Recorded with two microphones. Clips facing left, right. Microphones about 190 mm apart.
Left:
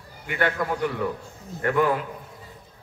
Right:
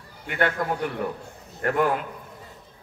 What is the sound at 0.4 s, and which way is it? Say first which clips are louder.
A man's voice: even; 50° right (ahead or behind).